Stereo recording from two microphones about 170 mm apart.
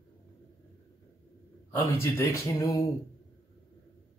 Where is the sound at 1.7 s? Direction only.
15° left (ahead or behind).